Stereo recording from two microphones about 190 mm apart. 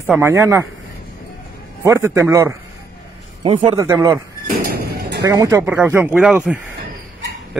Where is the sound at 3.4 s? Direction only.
25° right (ahead or behind).